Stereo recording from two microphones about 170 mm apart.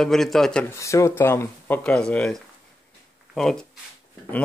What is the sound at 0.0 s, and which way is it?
Speech, centre (ahead or behind).